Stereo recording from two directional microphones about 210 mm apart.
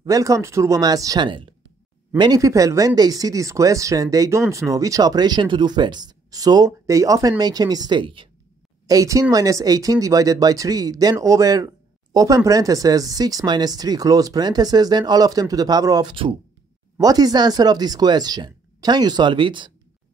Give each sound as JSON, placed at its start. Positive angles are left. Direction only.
{"t": 0.0, "sound": "speech", "side_deg": -15}